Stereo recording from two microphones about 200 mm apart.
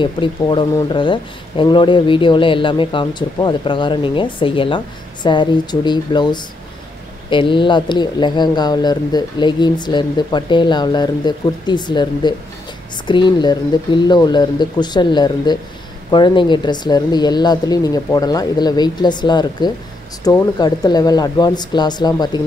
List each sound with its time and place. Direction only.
0.0 s speech: 25° left (ahead or behind)